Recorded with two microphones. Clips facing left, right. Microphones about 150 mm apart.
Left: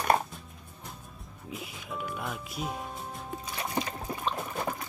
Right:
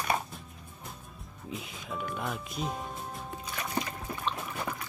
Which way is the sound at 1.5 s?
5° left (ahead or behind).